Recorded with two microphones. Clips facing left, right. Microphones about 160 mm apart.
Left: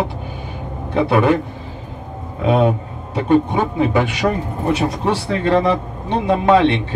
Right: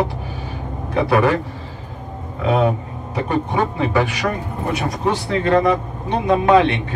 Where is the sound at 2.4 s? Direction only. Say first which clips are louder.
Left 2 dB; 25° left (ahead or behind).